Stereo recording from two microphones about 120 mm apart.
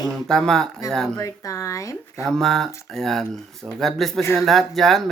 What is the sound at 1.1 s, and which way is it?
A woman's voice, 25° left (ahead or behind).